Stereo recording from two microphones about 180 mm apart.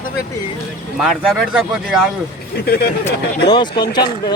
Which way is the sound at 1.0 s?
Centre (ahead or behind).